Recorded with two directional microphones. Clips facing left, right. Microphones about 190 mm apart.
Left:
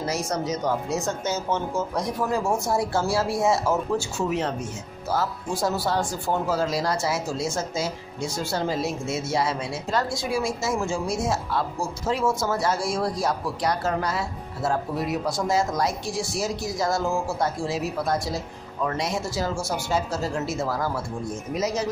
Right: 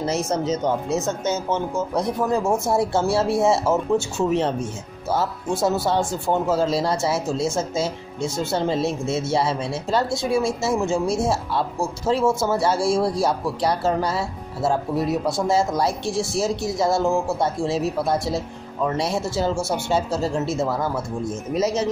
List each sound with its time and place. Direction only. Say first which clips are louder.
0.0 s speech: right 4 dB; 25° right (ahead or behind)
5.1 s speech: right 3 dB; 25° right (ahead or behind)